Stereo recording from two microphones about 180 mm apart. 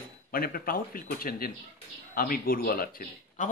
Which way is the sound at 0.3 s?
55° left (ahead or behind).